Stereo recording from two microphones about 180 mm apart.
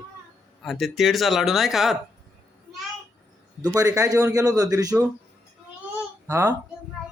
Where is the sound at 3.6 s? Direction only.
20° right (ahead or behind).